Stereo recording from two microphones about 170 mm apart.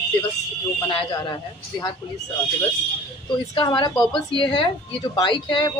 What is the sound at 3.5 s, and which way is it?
A woman's voice, 30° left (ahead or behind).